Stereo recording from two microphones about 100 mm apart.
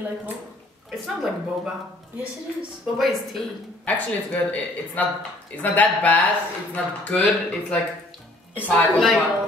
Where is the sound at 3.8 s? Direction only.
15° left (ahead or behind).